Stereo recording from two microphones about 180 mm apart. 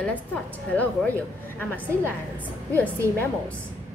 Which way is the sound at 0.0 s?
10° left (ahead or behind).